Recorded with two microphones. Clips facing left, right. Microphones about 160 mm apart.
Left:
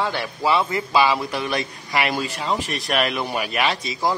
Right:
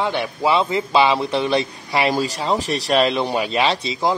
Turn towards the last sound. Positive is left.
turn(degrees=-20)  # may be behind; listen again after turning